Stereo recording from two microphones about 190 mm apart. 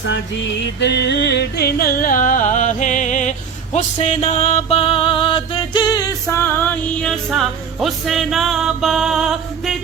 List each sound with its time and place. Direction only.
0.8 s music: 65° left (ahead or behind); by 6.1 s 20° left (ahead or behind)
6.3 s music: 10° left (ahead or behind)